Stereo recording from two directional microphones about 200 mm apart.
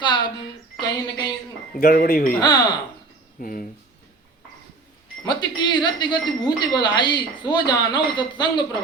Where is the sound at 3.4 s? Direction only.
45° left (ahead or behind).